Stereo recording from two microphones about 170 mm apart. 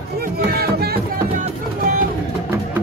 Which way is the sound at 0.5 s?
65° right (ahead or behind).